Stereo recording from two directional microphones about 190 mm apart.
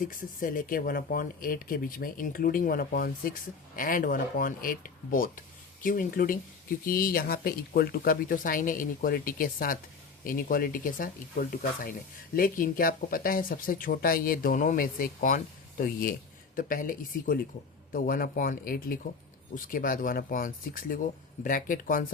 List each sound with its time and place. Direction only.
0.0 s speech: 45° left (ahead or behind)